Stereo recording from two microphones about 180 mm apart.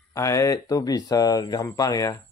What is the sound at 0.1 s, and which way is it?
Speech, 20° left (ahead or behind).